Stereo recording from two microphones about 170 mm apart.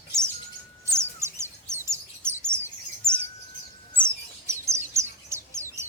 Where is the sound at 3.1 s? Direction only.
15° right (ahead or behind).